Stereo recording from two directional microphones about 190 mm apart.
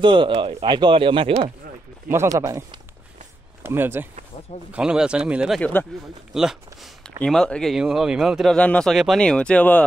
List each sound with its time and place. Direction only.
0.0 s speech: 25° right (ahead or behind)
2.0 s speech: 15° right (ahead or behind)
5.6 s speech: 10° left (ahead or behind)
6.3 s speech: centre (ahead or behind)